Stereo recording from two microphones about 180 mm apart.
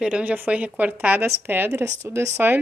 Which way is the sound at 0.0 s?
5° right (ahead or behind).